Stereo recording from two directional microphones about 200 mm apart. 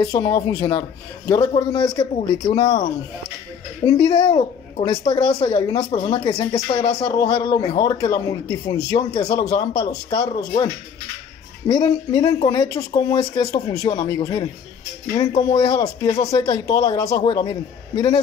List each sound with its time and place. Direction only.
0.0 s speech: 20° left (ahead or behind)
3.8 s speech: 20° left (ahead or behind)
16.1 s speech: 30° left (ahead or behind)